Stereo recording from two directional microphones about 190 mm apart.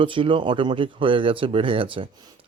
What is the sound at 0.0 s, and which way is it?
Speech, 25° right (ahead or behind).